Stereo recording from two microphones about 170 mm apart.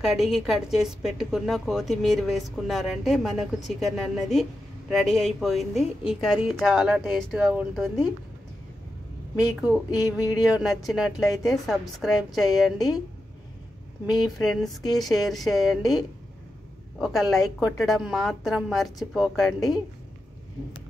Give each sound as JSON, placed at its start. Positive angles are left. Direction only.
{"t": 0.0, "sound": "a woman's voice", "side_deg": 0}
{"t": 9.3, "sound": "a woman's voice", "side_deg": -5}
{"t": 9.8, "sound": "a sound", "side_deg": 20}
{"t": 10.6, "sound": "a woman's voice", "side_deg": 0}
{"t": 14.2, "sound": "a woman's voice", "side_deg": 0}
{"t": 17.0, "sound": "a woman's voice", "side_deg": 0}